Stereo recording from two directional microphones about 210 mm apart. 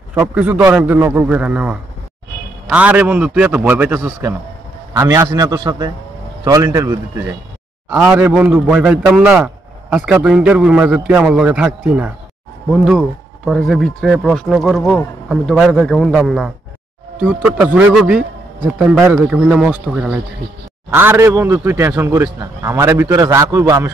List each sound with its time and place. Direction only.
0.1 s a man's voice: 10° right (ahead or behind)